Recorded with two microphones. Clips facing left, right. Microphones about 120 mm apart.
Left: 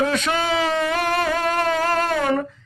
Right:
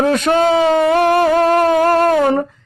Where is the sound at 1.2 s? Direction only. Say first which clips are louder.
Right 9 dB; 40° right (ahead or behind).